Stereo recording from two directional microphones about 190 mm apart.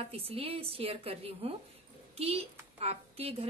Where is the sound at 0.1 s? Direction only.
30° right (ahead or behind).